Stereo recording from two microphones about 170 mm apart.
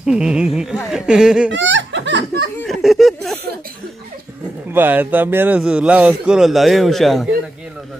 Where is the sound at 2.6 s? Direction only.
Centre (ahead or behind).